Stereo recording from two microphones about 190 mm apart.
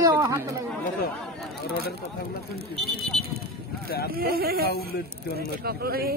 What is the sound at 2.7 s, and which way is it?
Speech, centre (ahead or behind).